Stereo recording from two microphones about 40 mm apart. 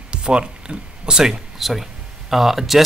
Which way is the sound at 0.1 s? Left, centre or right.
Right.